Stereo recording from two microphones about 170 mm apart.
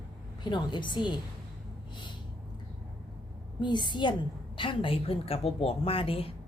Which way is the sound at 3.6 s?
25° left (ahead or behind).